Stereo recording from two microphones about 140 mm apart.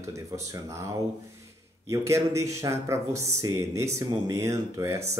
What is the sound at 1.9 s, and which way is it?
A man's voice, 20° right (ahead or behind).